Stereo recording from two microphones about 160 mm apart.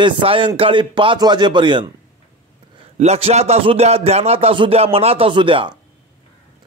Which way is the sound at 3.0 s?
40° right (ahead or behind).